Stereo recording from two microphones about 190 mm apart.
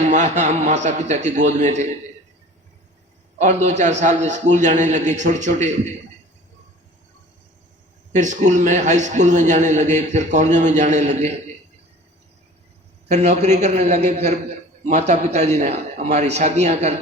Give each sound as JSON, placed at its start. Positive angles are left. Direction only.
{"t": 0.0, "sound": "a man's voice", "side_deg": -40}
{"t": 3.3, "sound": "a man's voice", "side_deg": -40}
{"t": 8.1, "sound": "a man's voice", "side_deg": -40}
{"t": 13.1, "sound": "a man's voice", "side_deg": -35}